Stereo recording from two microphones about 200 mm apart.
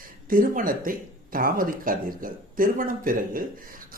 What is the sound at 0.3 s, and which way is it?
Speech, 45° right (ahead or behind).